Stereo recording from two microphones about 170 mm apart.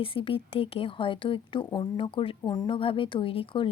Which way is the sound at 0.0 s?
30° left (ahead or behind).